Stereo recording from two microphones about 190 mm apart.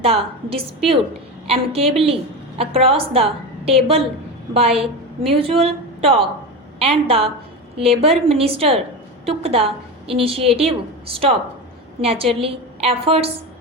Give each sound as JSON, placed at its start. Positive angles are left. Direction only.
{"t": 0.0, "sound": "a woman's voice", "side_deg": -30}
{"t": 5.3, "sound": "a woman's voice", "side_deg": -30}